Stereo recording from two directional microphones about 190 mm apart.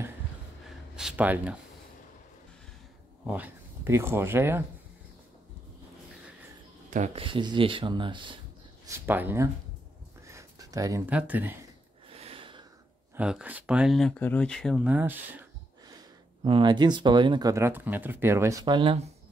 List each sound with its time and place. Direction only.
0.9 s speech: 5° right (ahead or behind)
3.3 s speech: 10° right (ahead or behind)
7.2 s speech: 25° right (ahead or behind)
8.8 s speech: 10° right (ahead or behind)
10.2 s a sound: 15° right (ahead or behind)
12.1 s snort: 30° right (ahead or behind)
13.1 s speech: 5° right (ahead or behind)
14.9 s speech: 10° right (ahead or behind)
16.4 s speech: 25° right (ahead or behind)